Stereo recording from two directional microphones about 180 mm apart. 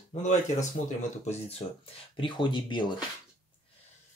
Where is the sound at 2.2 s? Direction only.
25° left (ahead or behind).